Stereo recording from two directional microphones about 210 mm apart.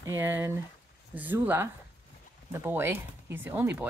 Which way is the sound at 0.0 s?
15° right (ahead or behind).